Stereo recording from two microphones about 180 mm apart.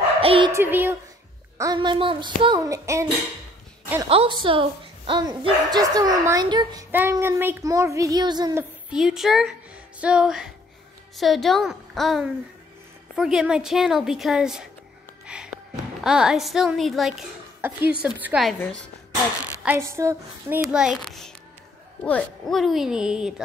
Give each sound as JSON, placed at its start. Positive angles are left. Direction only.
{"t": 0.2, "sound": "a child's voice", "side_deg": -30}
{"t": 0.5, "sound": "speech", "side_deg": -15}
{"t": 1.6, "sound": "speech", "side_deg": -25}
{"t": 4.1, "sound": "speech", "side_deg": -30}
{"t": 6.9, "sound": "speech", "side_deg": -10}
{"t": 8.9, "sound": "a woman's voice", "side_deg": 0}
{"t": 17.6, "sound": "speech", "side_deg": -10}
{"t": 19.6, "sound": "speech", "side_deg": -15}
{"t": 20.6, "sound": "speech", "side_deg": -5}